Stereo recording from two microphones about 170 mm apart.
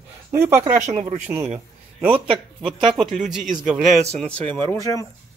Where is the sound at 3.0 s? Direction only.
Centre (ahead or behind).